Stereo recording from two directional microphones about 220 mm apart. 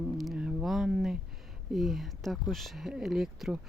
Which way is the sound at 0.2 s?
Centre (ahead or behind).